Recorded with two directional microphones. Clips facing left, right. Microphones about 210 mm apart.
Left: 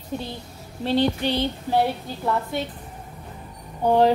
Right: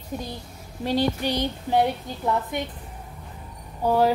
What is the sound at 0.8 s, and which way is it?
A woman's voice, 10° right (ahead or behind).